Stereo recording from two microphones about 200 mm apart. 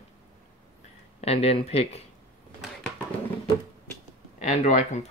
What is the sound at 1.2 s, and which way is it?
Speech, 30° left (ahead or behind).